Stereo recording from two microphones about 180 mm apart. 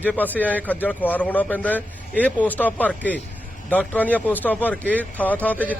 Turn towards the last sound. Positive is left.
turn(degrees=10)  # may be behind; listen again after turning